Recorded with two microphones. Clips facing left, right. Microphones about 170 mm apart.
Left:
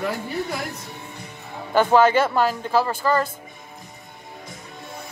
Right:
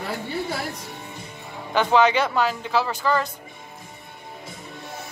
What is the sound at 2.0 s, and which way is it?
Speech, 45° left (ahead or behind).